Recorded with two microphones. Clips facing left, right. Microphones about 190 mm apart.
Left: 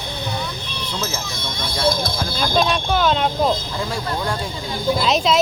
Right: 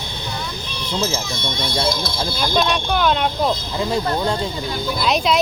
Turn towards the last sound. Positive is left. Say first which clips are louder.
# left 1 dB
turn(degrees=0)  # may be behind; listen again after turning